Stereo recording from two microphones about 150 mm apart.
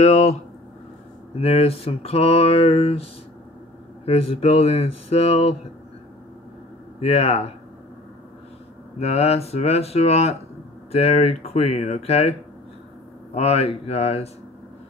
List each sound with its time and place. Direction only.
0.0 s speech: 50° left (ahead or behind)
7.0 s speech: 45° left (ahead or behind)
9.0 s speech: 45° left (ahead or behind)